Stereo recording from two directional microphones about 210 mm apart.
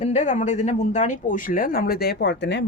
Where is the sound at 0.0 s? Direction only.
35° left (ahead or behind).